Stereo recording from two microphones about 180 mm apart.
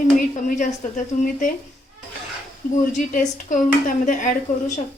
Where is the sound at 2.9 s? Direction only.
45° left (ahead or behind).